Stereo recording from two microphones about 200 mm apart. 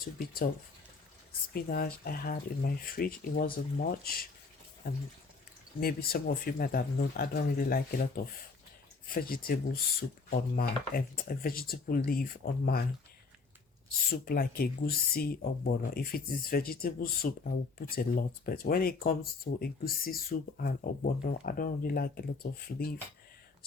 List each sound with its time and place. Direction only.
0.2 s speech: 50° left (ahead or behind)
1.5 s speech: 50° left (ahead or behind)
5.8 s speech: 50° left (ahead or behind)
14.1 s speech: 50° left (ahead or behind)